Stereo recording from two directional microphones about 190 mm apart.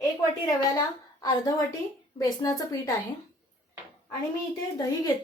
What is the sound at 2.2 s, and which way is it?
Speech, 20° left (ahead or behind).